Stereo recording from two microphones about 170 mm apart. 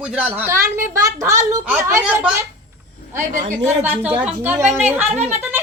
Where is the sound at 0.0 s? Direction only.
5° right (ahead or behind).